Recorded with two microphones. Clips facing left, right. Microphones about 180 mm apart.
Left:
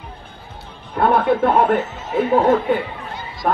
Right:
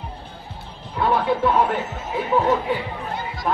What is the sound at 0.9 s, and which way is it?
Speech, 55° left (ahead or behind).